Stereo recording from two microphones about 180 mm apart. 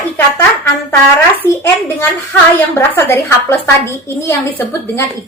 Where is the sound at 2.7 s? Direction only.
15° left (ahead or behind).